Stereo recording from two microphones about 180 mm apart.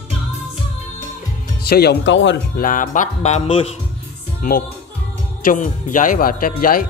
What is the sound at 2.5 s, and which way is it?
Speech, 50° left (ahead or behind).